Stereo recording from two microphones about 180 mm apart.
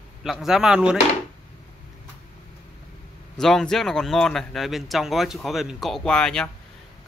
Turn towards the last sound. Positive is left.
turn(degrees=5)  # may be behind; listen again after turning